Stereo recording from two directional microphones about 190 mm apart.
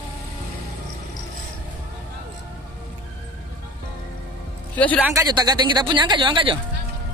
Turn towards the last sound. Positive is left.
turn(degrees=-25)  # may be behind; listen again after turning